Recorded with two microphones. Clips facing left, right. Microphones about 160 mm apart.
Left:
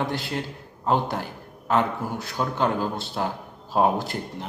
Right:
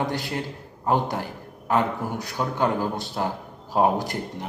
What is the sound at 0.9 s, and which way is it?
Speech, 15° right (ahead or behind).